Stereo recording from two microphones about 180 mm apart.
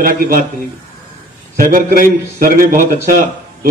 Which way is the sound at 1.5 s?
50° right (ahead or behind).